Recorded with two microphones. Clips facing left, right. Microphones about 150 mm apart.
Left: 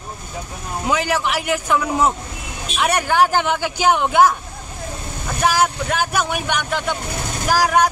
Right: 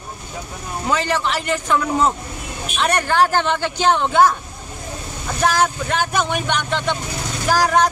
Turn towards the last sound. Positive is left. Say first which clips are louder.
# even
turn(degrees=10)  # may be behind; listen again after turning